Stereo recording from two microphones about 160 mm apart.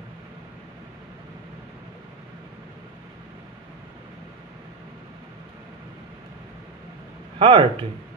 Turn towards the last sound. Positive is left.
turn(degrees=-30)  # may be behind; listen again after turning